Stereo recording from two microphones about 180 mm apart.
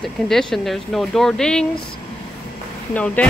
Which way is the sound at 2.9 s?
5° left (ahead or behind).